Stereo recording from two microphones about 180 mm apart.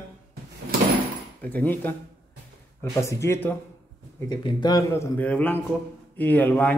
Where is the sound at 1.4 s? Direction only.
10° left (ahead or behind).